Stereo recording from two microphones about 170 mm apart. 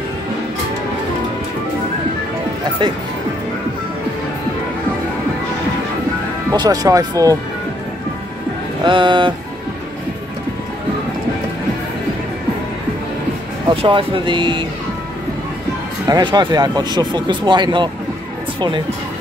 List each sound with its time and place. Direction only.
6.5 s speech: 25° right (ahead or behind)
8.8 s speech: 30° right (ahead or behind)
13.7 s speech: 30° right (ahead or behind)
16.1 s speech: 25° right (ahead or behind)